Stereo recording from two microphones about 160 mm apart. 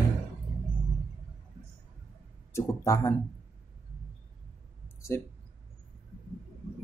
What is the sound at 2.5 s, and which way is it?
Speech, 20° left (ahead or behind).